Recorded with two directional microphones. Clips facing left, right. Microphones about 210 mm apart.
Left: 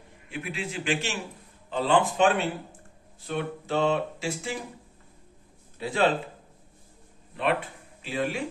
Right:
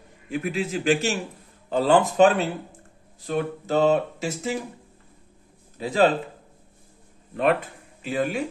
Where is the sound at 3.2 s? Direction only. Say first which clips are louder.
Right 5 dB; 40° right (ahead or behind).